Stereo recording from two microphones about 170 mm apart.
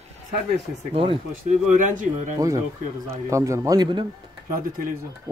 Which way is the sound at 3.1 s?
20° right (ahead or behind).